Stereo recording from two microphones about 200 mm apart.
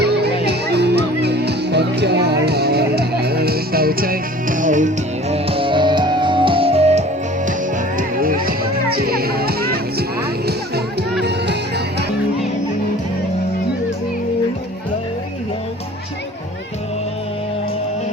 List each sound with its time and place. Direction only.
0.0 s music: 55° right (ahead or behind); by 4.9 s 40° right (ahead or behind)
5.3 s music: 30° right (ahead or behind)
7.9 s music: 45° right (ahead or behind)